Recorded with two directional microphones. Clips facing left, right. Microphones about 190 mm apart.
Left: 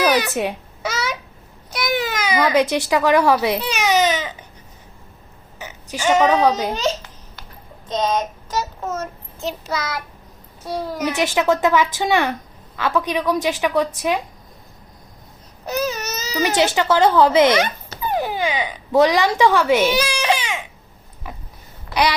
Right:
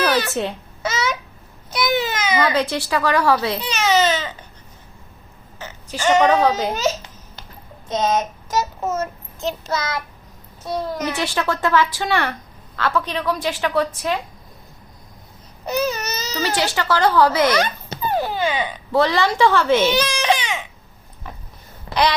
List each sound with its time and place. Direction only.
0.0 s a sound: 15° left (ahead or behind)
1.7 s speech: 10° left (ahead or behind)
3.6 s baby cry: 10° left (ahead or behind)
5.5 s speech: 15° left (ahead or behind)
7.9 s child singing: 10° right (ahead or behind)
9.4 s a child's voice: 10° left (ahead or behind)
15.6 s speech: centre (ahead or behind)
16.5 s speech: 20° left (ahead or behind)
21.2 s a sound: 10° left (ahead or behind)
21.9 s a sound: 30° right (ahead or behind)